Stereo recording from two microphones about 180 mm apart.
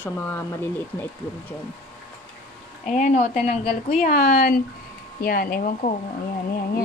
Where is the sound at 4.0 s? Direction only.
45° left (ahead or behind).